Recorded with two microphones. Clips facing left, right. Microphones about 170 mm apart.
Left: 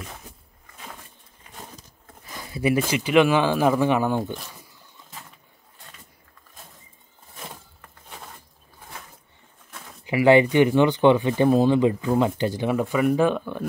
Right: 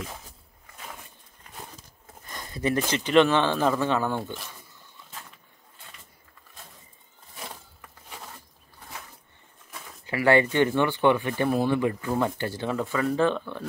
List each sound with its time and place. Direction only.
2.2 s speech: 5° left (ahead or behind)
10.0 s speech: 15° left (ahead or behind)